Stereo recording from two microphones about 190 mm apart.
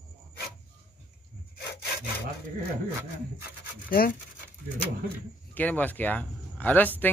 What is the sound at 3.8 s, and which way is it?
Speech, 50° left (ahead or behind).